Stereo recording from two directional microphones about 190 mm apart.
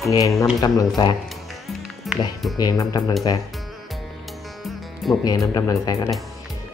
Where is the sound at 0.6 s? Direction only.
20° left (ahead or behind).